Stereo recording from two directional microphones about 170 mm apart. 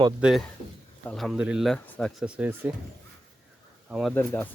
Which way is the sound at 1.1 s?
Centre (ahead or behind).